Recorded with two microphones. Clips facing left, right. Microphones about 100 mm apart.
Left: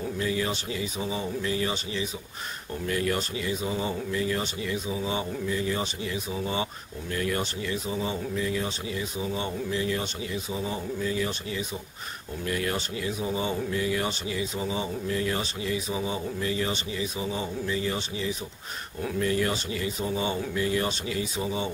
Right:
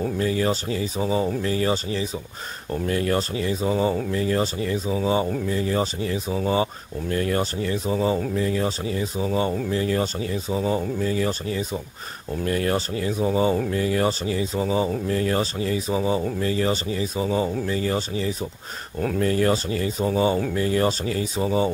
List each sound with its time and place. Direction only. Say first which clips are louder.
0.2 s speech: right 5 dB; 40° right (ahead or behind)